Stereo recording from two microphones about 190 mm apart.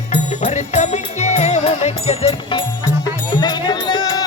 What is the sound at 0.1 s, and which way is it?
Music, 40° left (ahead or behind).